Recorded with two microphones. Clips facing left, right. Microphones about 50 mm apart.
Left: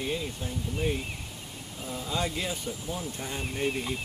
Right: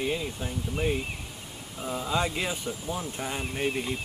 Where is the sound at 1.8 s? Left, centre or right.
Right.